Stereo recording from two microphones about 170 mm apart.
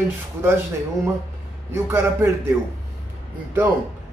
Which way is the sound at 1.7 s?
15° right (ahead or behind).